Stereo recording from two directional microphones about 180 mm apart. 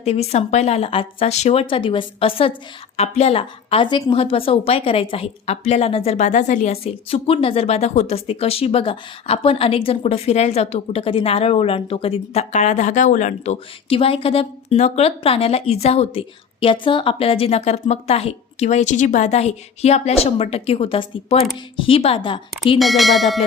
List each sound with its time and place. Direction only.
0.0 s a woman's voice: 35° left (ahead or behind)
22.8 s speech: centre (ahead or behind)